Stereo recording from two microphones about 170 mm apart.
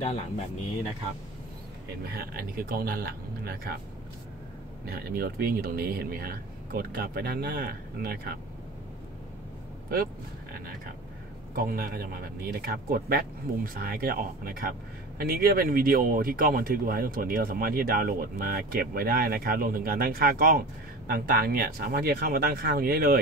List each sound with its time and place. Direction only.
0.0 s speech: 35° left (ahead or behind)
2.0 s speech: 60° right (ahead or behind)
4.8 s speech: 65° right (ahead or behind)
11.5 s speech: 60° right (ahead or behind)